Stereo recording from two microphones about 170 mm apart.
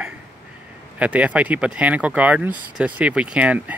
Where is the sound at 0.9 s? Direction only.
10° right (ahead or behind).